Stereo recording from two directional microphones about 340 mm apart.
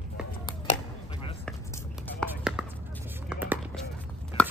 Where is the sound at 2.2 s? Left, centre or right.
Centre.